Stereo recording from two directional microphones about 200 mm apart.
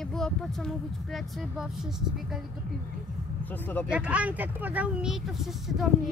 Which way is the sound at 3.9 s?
5° right (ahead or behind).